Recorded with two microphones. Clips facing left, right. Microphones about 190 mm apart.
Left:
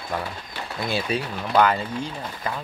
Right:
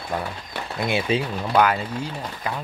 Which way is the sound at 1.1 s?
20° right (ahead or behind).